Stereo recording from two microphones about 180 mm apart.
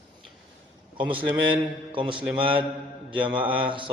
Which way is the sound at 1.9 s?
30° right (ahead or behind).